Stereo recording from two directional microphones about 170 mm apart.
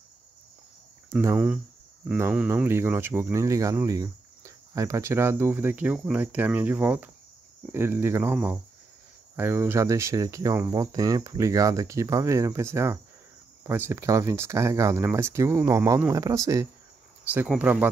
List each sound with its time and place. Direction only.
1.1 s speech: 10° right (ahead or behind)